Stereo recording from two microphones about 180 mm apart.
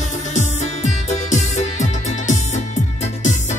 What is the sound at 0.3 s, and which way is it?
Music, 40° left (ahead or behind).